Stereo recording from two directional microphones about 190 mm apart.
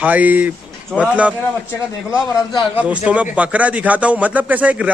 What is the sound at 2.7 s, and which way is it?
A man's voice, 5° right (ahead or behind).